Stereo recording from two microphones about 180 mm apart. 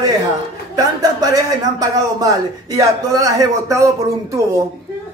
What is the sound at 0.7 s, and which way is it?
Speech, 20° right (ahead or behind).